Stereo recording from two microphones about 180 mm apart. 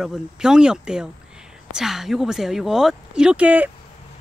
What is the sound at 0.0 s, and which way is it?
Speech, 5° right (ahead or behind).